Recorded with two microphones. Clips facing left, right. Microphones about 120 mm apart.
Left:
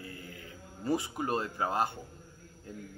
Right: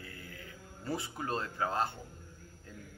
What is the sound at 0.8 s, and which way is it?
Speech, 15° left (ahead or behind).